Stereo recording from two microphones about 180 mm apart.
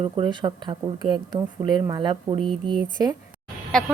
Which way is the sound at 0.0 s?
25° right (ahead or behind).